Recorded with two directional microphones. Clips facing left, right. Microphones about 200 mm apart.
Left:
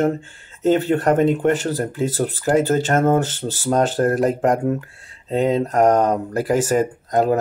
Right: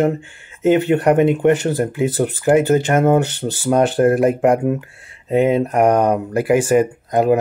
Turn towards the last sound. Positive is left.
turn(degrees=-10)  # may be behind; listen again after turning